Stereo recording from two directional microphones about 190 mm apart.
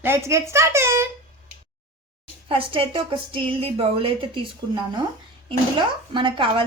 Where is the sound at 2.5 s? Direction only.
25° right (ahead or behind).